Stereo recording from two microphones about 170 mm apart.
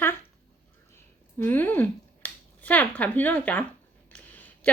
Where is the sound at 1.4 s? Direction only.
10° left (ahead or behind).